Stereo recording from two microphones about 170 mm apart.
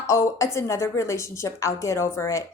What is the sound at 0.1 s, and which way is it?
A woman's voice, 15° left (ahead or behind).